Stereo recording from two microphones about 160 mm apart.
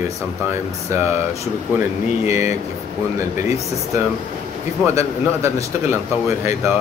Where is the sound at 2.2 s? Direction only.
15° right (ahead or behind).